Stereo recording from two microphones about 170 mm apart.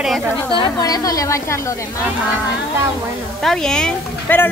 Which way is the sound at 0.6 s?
25° left (ahead or behind).